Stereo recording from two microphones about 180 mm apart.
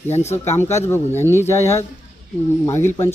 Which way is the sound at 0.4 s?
15° left (ahead or behind).